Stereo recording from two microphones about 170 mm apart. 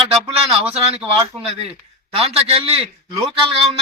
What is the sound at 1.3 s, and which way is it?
Speech, 5° left (ahead or behind).